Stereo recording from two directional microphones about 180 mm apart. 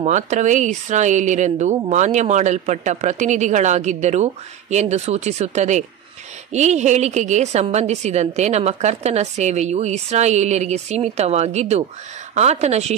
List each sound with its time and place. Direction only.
0.0 s speech: 40° right (ahead or behind)